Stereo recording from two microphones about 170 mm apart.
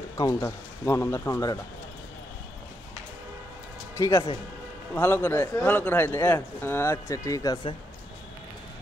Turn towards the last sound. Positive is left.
turn(degrees=20)  # may be behind; listen again after turning